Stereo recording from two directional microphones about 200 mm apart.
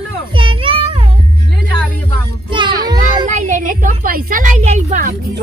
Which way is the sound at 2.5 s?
20° right (ahead or behind).